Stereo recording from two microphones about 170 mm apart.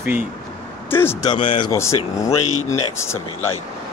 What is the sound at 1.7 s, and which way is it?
Speech, 15° left (ahead or behind).